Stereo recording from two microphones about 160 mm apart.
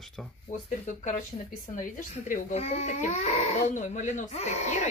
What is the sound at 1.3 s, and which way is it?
Speech, 40° left (ahead or behind).